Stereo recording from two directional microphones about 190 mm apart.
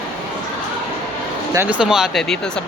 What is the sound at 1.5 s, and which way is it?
Speech, 10° right (ahead or behind).